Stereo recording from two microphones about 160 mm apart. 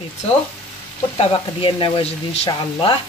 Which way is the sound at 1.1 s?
30° left (ahead or behind).